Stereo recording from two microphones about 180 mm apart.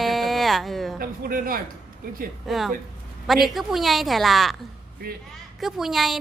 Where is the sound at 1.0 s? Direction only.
50° right (ahead or behind).